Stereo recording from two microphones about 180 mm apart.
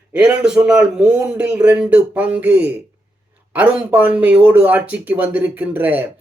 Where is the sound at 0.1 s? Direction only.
5° right (ahead or behind).